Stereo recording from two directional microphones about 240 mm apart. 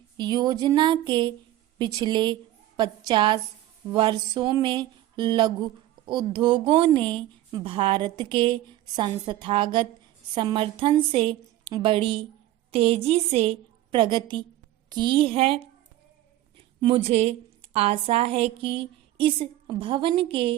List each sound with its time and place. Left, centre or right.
0.2 s a woman's voice: centre